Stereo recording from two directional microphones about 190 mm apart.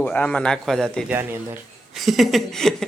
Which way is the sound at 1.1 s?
10° right (ahead or behind).